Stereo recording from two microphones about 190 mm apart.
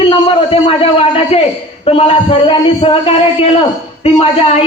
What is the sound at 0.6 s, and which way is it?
A man's voice, 30° left (ahead or behind).